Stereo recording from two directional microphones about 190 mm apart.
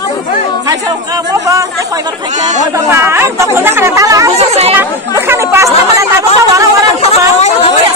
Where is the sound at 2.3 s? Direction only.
40° right (ahead or behind).